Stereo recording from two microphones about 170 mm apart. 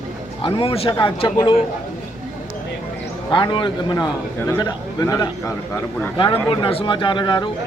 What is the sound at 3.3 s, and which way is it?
A man's voice, 30° left (ahead or behind).